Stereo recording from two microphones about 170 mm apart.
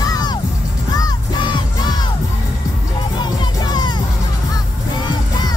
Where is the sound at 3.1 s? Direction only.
25° left (ahead or behind).